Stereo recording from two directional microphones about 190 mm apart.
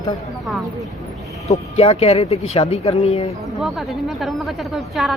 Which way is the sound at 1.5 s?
35° left (ahead or behind).